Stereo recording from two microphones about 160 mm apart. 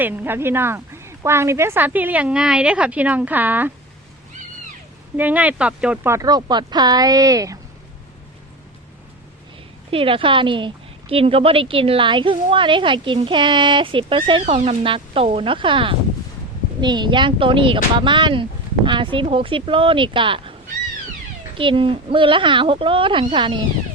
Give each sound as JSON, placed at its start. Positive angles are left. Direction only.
{"t": 0.0, "sound": "a woman's voice", "side_deg": -10}
{"t": 5.1, "sound": "speech", "side_deg": -10}
{"t": 9.9, "sound": "speech", "side_deg": -35}
{"t": 21.6, "sound": "speech", "side_deg": -35}